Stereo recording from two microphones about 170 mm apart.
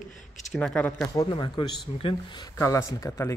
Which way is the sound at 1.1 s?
25° left (ahead or behind).